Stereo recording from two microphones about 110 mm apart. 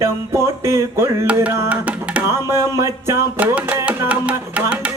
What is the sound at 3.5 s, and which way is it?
Music, 15° right (ahead or behind).